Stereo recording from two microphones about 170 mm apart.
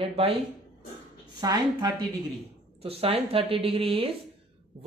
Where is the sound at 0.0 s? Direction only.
35° right (ahead or behind).